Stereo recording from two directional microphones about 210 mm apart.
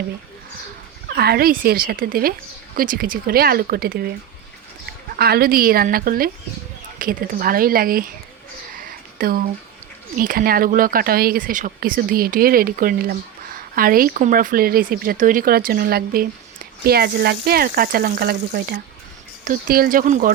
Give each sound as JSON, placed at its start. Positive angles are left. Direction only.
{"t": 1.0, "sound": "speech", "side_deg": -45}
{"t": 5.1, "sound": "speech", "side_deg": -45}
{"t": 8.7, "sound": "a sound", "side_deg": -40}
{"t": 10.2, "sound": "speech", "side_deg": -45}